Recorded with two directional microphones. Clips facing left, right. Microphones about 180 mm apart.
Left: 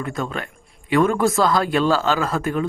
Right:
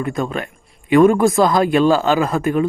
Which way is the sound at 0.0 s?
15° right (ahead or behind).